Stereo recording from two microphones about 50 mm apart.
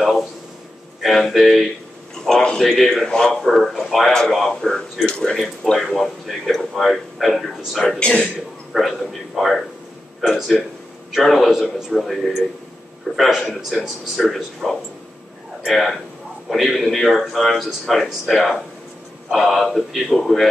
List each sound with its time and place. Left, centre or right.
1.0 s speech: centre
5.3 s speech: centre
8.0 s speech: centre
8.7 s speech: centre
13.7 s speech: centre